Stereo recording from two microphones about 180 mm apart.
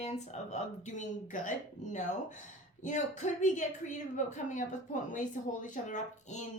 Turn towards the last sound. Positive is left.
turn(degrees=40)  # may be behind; listen again after turning